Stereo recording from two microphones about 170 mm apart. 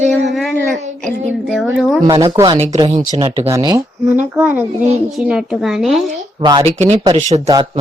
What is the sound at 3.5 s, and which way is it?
Speech, 20° right (ahead or behind).